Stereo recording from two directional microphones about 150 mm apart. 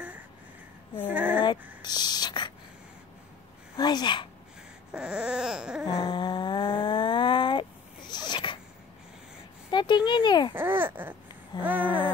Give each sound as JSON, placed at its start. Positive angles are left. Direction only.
{"t": 1.0, "sound": "speech", "side_deg": -10}
{"t": 1.8, "sound": "a sound", "side_deg": 25}
{"t": 3.7, "sound": "speech", "side_deg": 25}
{"t": 4.9, "sound": "baby cry", "side_deg": -5}
{"t": 5.9, "sound": "a sound", "side_deg": 35}
{"t": 9.7, "sound": "speech", "side_deg": 30}
{"t": 10.5, "sound": "speech", "side_deg": -15}